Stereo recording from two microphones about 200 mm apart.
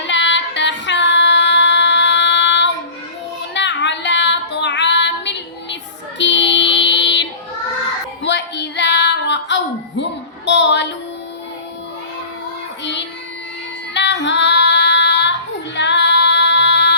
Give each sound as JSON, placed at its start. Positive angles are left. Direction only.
{"t": 0.1, "sound": "female singing", "side_deg": 65}
{"t": 3.5, "sound": "child singing", "side_deg": 60}
{"t": 8.2, "sound": "female singing", "side_deg": 60}
{"t": 10.0, "sound": "a sound", "side_deg": 60}
{"t": 12.8, "sound": "child singing", "side_deg": 60}
{"t": 13.9, "sound": "female singing", "side_deg": 60}
{"t": 15.7, "sound": "music", "side_deg": 60}